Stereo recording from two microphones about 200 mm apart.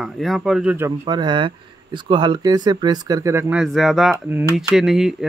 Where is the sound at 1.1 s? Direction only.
20° right (ahead or behind).